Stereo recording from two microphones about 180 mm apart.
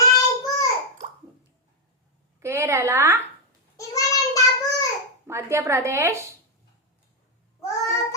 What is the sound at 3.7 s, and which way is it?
Child singing, 20° left (ahead or behind).